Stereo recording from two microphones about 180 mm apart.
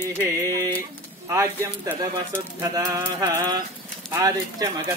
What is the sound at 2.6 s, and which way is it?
Pigeon, 20° right (ahead or behind).